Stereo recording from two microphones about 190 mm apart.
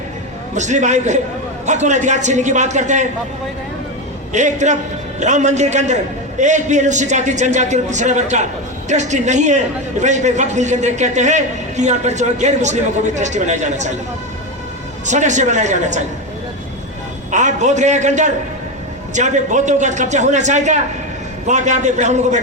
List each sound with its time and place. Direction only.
0.5 s a man's voice: 40° right (ahead or behind)
4.3 s a man's voice: 40° right (ahead or behind)
15.0 s a man's voice: 40° right (ahead or behind)
17.3 s a man's voice: 40° right (ahead or behind)